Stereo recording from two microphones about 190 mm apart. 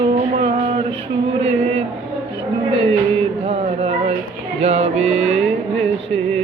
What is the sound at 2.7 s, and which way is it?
Music, 30° right (ahead or behind).